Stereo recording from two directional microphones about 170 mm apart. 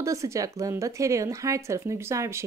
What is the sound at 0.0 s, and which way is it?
Speech, 20° right (ahead or behind).